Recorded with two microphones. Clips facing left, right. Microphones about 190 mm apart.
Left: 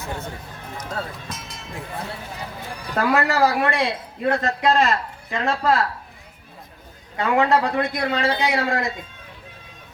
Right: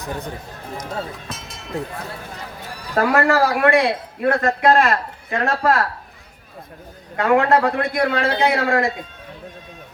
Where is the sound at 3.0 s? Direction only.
50° right (ahead or behind).